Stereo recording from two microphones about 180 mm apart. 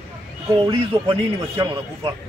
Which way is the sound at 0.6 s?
25° right (ahead or behind).